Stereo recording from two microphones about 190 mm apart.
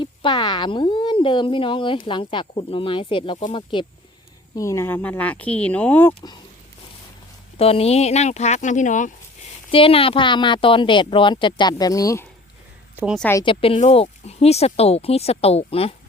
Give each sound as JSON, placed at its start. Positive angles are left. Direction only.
{"t": 0.0, "sound": "speech", "side_deg": 25}
{"t": 4.5, "sound": "speech", "side_deg": 15}
{"t": 7.5, "sound": "speech", "side_deg": 30}
{"t": 9.7, "sound": "speech", "side_deg": 30}
{"t": 13.4, "sound": "speech", "side_deg": 30}